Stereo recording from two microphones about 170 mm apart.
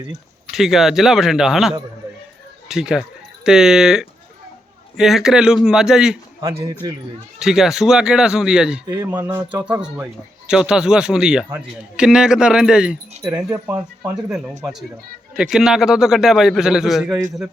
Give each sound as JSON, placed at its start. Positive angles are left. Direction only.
{"t": 0.5, "sound": "speech", "side_deg": 0}
{"t": 7.3, "sound": "speech", "side_deg": 0}
{"t": 8.9, "sound": "speech", "side_deg": -20}
{"t": 13.3, "sound": "speech", "side_deg": -20}
{"t": 14.0, "sound": "speech", "side_deg": -5}